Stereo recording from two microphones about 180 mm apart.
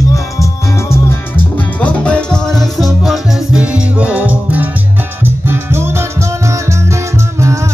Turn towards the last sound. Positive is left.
turn(degrees=-15)  # may be behind; listen again after turning